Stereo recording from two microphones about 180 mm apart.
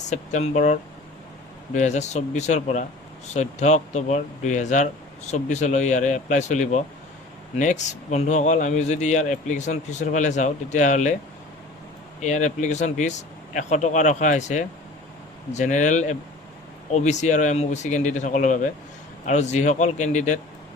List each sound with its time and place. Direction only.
0.1 s speech: 40° left (ahead or behind)
12.2 s speech: 40° left (ahead or behind)